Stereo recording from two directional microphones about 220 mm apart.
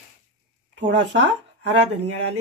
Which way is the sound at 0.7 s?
55° right (ahead or behind).